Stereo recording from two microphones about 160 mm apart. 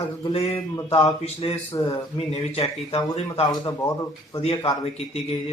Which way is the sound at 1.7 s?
25° left (ahead or behind).